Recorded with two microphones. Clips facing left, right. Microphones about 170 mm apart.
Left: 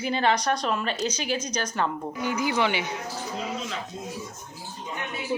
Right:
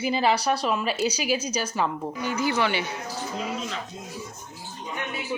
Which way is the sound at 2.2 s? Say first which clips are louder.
Even; 15° left (ahead or behind).